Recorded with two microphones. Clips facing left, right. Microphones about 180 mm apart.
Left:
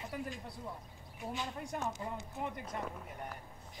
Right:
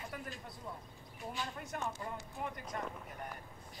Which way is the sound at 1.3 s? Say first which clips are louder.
Left 2 dB; 20° left (ahead or behind).